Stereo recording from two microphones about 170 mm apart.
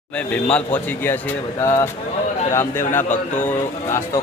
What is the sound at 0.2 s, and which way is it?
Speech, 10° left (ahead or behind).